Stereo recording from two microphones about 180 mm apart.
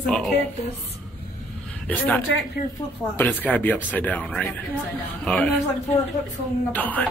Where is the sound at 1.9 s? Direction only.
10° left (ahead or behind).